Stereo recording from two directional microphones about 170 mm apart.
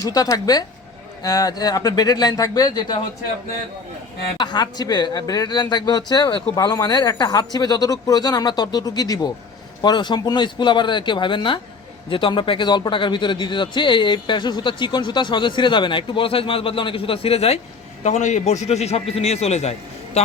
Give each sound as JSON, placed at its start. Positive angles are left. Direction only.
{"t": 0.1, "sound": "speech", "side_deg": 20}
{"t": 4.4, "sound": "a man's voice", "side_deg": 25}